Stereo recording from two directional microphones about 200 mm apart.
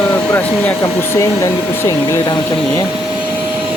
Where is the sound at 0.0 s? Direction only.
10° left (ahead or behind).